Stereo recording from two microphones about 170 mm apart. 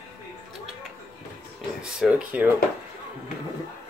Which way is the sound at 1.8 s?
5° right (ahead or behind).